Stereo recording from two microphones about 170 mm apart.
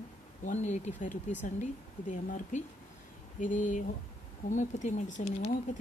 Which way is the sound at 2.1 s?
45° left (ahead or behind).